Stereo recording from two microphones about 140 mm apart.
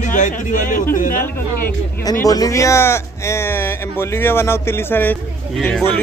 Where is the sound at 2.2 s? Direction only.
25° left (ahead or behind).